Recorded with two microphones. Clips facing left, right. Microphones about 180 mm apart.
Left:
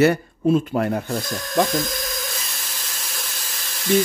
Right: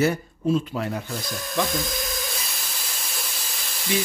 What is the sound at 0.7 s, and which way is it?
Speech, 55° left (ahead or behind).